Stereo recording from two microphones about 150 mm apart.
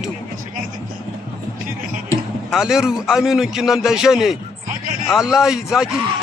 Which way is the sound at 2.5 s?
5° right (ahead or behind).